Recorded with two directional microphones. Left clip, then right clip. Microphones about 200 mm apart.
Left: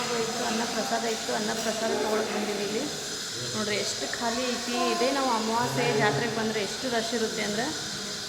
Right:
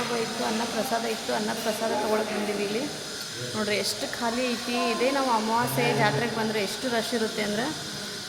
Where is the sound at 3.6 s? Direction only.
25° right (ahead or behind).